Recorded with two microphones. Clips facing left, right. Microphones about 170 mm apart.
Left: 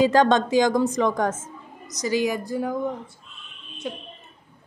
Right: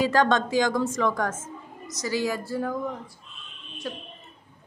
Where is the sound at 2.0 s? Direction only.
15° left (ahead or behind).